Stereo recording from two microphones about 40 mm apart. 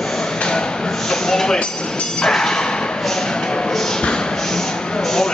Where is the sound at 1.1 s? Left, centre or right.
Centre.